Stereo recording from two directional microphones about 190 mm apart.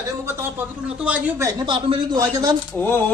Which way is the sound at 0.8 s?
5° right (ahead or behind).